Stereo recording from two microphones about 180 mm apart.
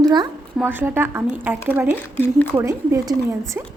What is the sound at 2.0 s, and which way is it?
Speech, 10° left (ahead or behind).